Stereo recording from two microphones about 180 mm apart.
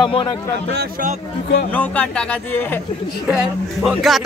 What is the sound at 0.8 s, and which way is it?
Speech, 50° right (ahead or behind).